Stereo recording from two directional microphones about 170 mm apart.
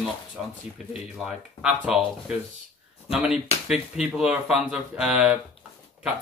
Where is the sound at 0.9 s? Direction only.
Centre (ahead or behind).